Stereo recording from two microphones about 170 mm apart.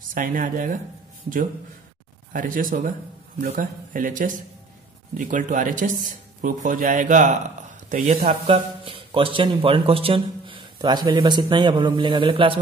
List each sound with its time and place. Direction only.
0.1 s speech: 55° right (ahead or behind)
2.3 s speech: 55° right (ahead or behind); by 12.5 s 30° right (ahead or behind)